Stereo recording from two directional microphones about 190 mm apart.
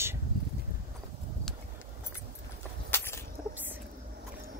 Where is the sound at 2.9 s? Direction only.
10° left (ahead or behind).